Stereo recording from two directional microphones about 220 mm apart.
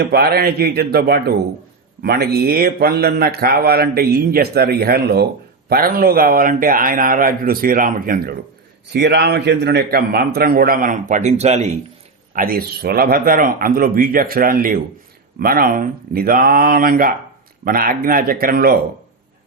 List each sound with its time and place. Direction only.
0.0 s a man's voice: 45° right (ahead or behind)